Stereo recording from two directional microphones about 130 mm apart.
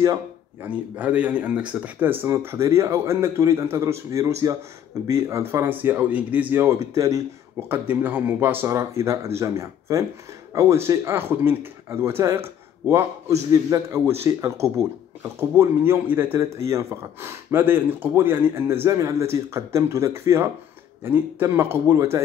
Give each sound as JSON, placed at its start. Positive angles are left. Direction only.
{"t": 0.0, "sound": "a man's voice", "side_deg": -20}